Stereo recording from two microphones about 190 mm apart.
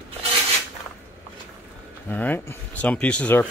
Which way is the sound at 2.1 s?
10° left (ahead or behind).